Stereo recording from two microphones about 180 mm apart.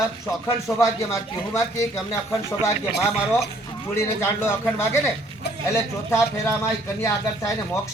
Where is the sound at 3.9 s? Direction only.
15° left (ahead or behind).